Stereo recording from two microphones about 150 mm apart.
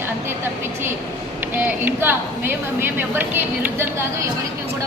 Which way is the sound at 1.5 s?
15° right (ahead or behind).